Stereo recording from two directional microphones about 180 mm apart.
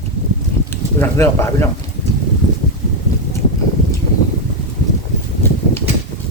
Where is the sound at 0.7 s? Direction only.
15° left (ahead or behind).